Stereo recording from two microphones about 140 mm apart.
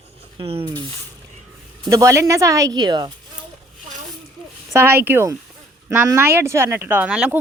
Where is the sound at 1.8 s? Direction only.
25° right (ahead or behind).